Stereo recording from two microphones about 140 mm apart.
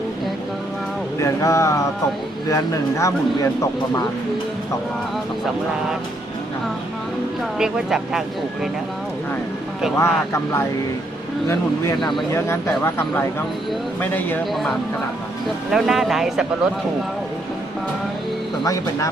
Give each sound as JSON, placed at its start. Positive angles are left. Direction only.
{"t": 1.2, "sound": "speech", "side_deg": 20}
{"t": 7.6, "sound": "speech", "side_deg": -5}
{"t": 10.0, "sound": "speech", "side_deg": 20}
{"t": 12.3, "sound": "speech", "side_deg": 20}
{"t": 14.5, "sound": "speech", "side_deg": 0}
{"t": 18.6, "sound": "speech", "side_deg": 25}